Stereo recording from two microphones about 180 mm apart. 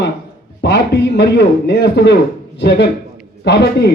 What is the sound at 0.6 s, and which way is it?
Speech, 70° left (ahead or behind).